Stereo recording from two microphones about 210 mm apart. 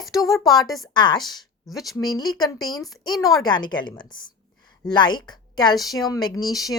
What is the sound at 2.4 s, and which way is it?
Speech, 20° left (ahead or behind).